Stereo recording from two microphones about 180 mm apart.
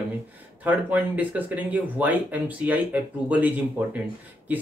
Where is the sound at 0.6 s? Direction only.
10° right (ahead or behind).